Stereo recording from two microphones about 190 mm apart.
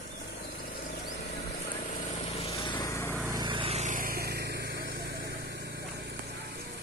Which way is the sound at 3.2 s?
20° right (ahead or behind).